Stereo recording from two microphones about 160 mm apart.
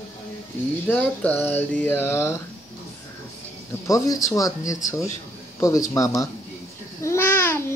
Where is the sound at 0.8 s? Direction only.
10° left (ahead or behind).